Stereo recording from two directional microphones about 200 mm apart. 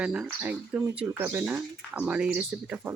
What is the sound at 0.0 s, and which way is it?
Speech, 5° right (ahead or behind).